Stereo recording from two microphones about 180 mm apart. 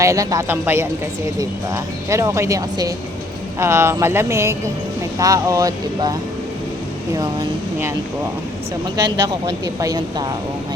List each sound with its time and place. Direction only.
0.0 s speech: 20° right (ahead or behind)
7.2 s speech: 15° right (ahead or behind)
9.2 s speech: 20° right (ahead or behind)